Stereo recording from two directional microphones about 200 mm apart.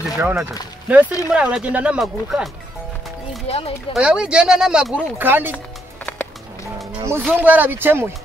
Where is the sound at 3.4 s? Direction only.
30° left (ahead or behind).